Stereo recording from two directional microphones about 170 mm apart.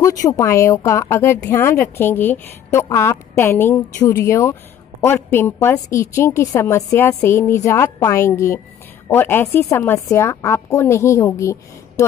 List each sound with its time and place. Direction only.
0.0 s a woman's voice: 20° left (ahead or behind)